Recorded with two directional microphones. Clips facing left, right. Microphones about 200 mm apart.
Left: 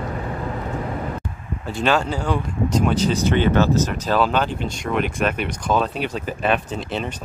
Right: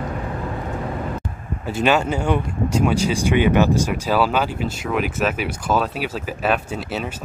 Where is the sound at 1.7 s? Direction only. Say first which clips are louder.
Right 2 dB; 5° right (ahead or behind).